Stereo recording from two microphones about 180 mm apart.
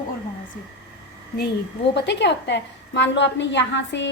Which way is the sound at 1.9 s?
70° left (ahead or behind).